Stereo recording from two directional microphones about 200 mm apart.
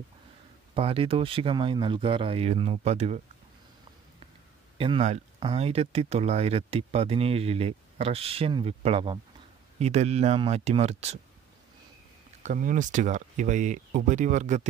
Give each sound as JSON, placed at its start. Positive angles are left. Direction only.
{"t": 0.7, "sound": "speech", "side_deg": -25}
{"t": 4.7, "sound": "speech", "side_deg": -30}
{"t": 12.4, "sound": "speech", "side_deg": -40}